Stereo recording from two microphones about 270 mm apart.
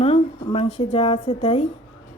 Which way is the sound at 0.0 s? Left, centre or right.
Left.